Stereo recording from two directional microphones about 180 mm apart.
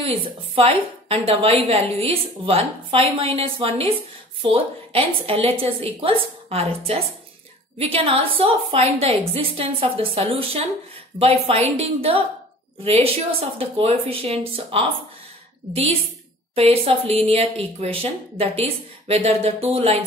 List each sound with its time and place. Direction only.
0.6 s a woman's voice: 35° right (ahead or behind)
16.5 s a woman's voice: 35° right (ahead or behind)